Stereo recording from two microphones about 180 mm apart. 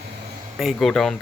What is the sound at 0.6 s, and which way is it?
Speech, centre (ahead or behind).